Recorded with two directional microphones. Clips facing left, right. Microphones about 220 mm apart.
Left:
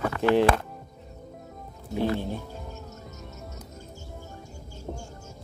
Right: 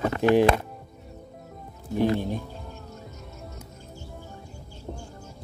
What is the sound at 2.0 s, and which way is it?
Speech, 15° right (ahead or behind).